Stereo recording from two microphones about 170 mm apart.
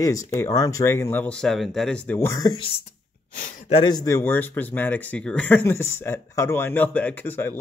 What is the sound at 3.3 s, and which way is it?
Speech, 55° left (ahead or behind).